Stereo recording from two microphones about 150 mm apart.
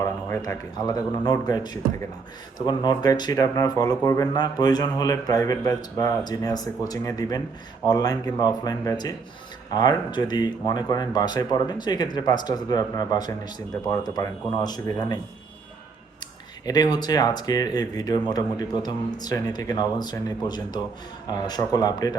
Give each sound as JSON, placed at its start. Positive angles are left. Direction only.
{"t": 0.3, "sound": "speech", "side_deg": 25}
{"t": 16.6, "sound": "speech", "side_deg": 25}